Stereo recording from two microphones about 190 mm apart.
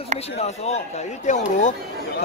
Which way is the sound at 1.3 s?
40° left (ahead or behind).